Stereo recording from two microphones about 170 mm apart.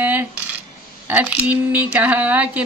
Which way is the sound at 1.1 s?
10° right (ahead or behind).